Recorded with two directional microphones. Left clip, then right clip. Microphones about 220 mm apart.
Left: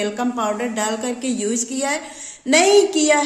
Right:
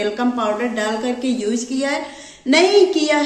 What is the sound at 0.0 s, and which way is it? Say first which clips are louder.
Speech: right 2 dB; 55° left (ahead or behind).